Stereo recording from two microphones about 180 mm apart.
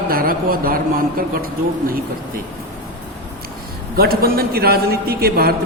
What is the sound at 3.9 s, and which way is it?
A man's voice, 55° right (ahead or behind).